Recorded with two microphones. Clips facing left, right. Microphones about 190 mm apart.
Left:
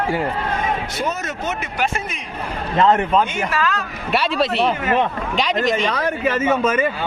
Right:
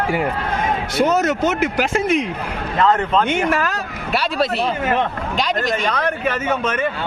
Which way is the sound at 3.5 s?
45° right (ahead or behind).